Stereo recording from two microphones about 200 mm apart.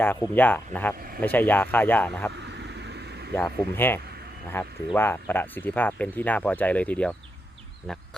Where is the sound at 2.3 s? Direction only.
60° right (ahead or behind).